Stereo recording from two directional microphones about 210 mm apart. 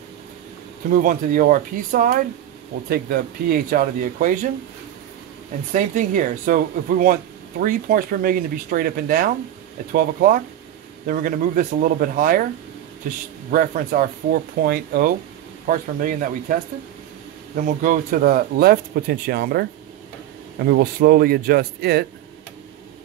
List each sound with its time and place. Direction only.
1.0 s speech: 40° right (ahead or behind)
5.7 s speech: 35° right (ahead or behind)
13.5 s speech: 40° right (ahead or behind)
17.6 s speech: 40° right (ahead or behind)
20.6 s speech: 50° right (ahead or behind)